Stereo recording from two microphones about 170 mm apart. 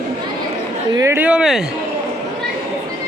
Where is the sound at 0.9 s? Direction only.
15° right (ahead or behind).